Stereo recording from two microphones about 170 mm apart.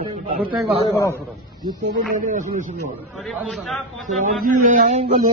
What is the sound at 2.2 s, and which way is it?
Speech, 50° right (ahead or behind).